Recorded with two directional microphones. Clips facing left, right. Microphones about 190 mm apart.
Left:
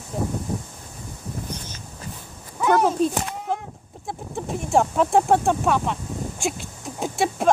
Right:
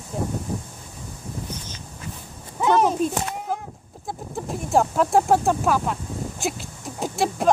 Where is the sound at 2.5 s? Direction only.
20° right (ahead or behind).